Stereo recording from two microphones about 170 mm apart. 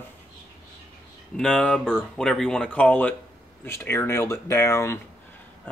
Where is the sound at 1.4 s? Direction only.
5° left (ahead or behind).